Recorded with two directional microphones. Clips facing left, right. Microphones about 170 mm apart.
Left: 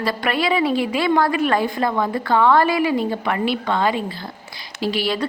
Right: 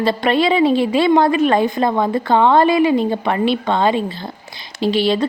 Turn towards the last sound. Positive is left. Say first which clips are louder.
# right 6 dB
turn(degrees=-25)  # may be behind; listen again after turning